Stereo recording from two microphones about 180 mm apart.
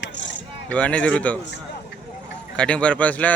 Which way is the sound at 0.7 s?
5° left (ahead or behind).